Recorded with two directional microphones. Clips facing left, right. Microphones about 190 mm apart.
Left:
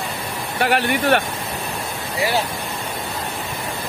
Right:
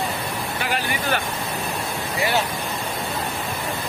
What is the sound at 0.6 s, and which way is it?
Speech, 65° left (ahead or behind).